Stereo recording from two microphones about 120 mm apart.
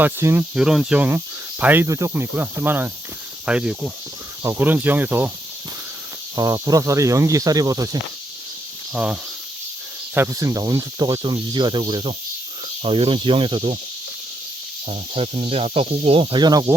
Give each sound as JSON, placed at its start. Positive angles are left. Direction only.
{"t": 0.0, "sound": "speech", "side_deg": -20}
{"t": 0.5, "sound": "speech", "side_deg": -5}
{"t": 1.9, "sound": "speech", "side_deg": -25}
{"t": 4.4, "sound": "speech", "side_deg": -15}
{"t": 6.3, "sound": "speech", "side_deg": -30}
{"t": 8.9, "sound": "speech", "side_deg": -5}
{"t": 10.2, "sound": "speech", "side_deg": -25}
{"t": 14.8, "sound": "speech", "side_deg": -55}
{"t": 16.3, "sound": "speech", "side_deg": -35}